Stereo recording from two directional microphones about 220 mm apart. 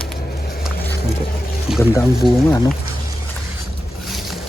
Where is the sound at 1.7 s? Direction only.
Centre (ahead or behind).